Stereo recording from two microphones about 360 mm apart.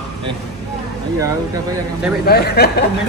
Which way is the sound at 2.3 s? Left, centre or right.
Left.